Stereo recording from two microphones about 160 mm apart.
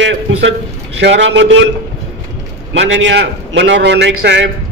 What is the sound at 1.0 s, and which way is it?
Speech, 90° right.